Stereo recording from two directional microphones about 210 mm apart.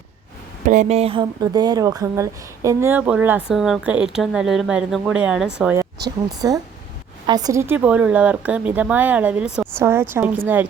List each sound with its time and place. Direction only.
0.7 s speech: 35° right (ahead or behind); by 10.7 s 10° right (ahead or behind)